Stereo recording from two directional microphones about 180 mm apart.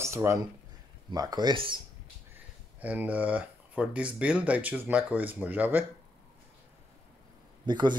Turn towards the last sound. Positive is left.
turn(degrees=-25)  # may be behind; listen again after turning